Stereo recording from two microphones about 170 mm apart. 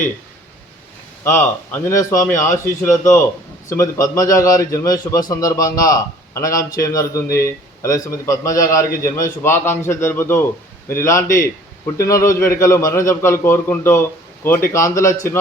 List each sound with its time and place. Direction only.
1.2 s a man's voice: 10° left (ahead or behind)
3.7 s a man's voice: 20° left (ahead or behind)